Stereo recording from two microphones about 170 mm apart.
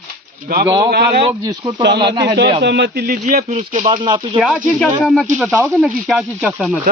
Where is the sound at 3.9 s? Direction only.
25° right (ahead or behind).